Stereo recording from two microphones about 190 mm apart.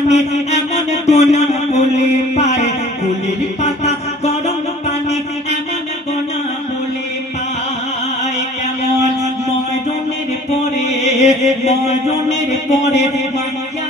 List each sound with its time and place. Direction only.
0.1 s mantra: 35° left (ahead or behind)
3.6 s music: 35° left (ahead or behind)
11.0 s chant: 35° left (ahead or behind)